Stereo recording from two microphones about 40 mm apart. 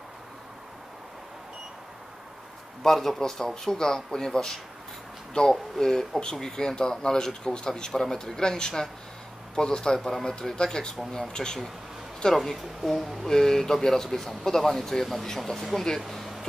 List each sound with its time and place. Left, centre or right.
2.8 s a man's voice: centre
9.9 s speech: centre
12.4 s speech: centre